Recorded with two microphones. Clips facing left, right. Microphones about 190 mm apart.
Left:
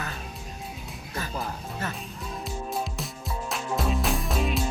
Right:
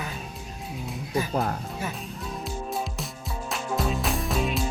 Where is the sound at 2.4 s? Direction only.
Centre (ahead or behind).